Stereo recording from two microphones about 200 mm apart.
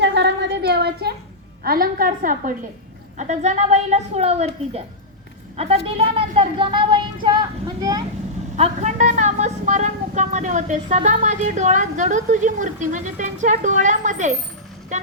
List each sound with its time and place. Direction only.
0.0 s a sound: 60° right (ahead or behind)
1.6 s a woman's voice: 45° right (ahead or behind); by 8.0 s 20° right (ahead or behind)
8.5 s speech: 35° right (ahead or behind)